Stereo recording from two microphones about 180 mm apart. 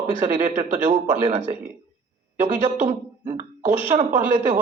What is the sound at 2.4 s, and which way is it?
Speech, 45° right (ahead or behind).